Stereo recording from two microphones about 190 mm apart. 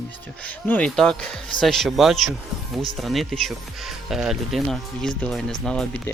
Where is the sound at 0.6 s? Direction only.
5° left (ahead or behind).